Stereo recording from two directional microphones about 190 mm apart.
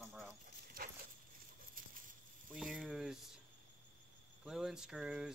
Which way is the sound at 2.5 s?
Centre (ahead or behind).